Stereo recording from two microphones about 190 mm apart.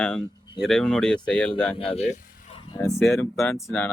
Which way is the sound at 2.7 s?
15° left (ahead or behind).